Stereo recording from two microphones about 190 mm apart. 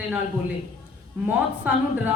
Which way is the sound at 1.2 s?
10° right (ahead or behind).